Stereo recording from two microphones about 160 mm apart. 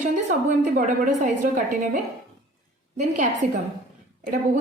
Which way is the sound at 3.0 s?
50° right (ahead or behind).